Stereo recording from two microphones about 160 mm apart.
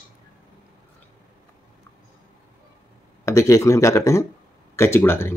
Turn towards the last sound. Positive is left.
turn(degrees=15)  # may be behind; listen again after turning